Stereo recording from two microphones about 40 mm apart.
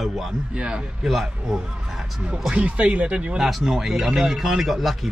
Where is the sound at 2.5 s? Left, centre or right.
Right.